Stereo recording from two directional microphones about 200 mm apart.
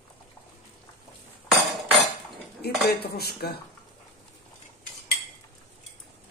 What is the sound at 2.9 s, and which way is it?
Dishes, 50° left (ahead or behind).